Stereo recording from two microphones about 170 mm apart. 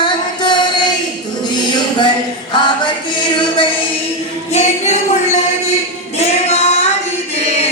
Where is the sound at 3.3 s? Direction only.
30° left (ahead or behind).